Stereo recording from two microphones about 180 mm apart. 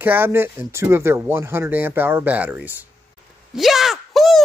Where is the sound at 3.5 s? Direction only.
Centre (ahead or behind).